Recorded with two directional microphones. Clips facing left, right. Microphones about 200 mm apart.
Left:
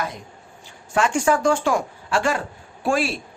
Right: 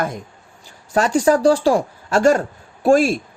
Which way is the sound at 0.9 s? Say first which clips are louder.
Right 4 dB; 40° right (ahead or behind).